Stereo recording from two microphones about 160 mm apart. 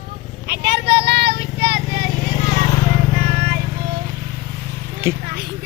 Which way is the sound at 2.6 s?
30° left (ahead or behind).